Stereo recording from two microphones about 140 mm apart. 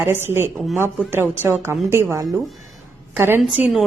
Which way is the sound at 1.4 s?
15° right (ahead or behind).